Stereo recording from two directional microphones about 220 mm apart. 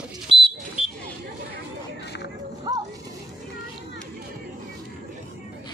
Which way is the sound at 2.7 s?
20° right (ahead or behind).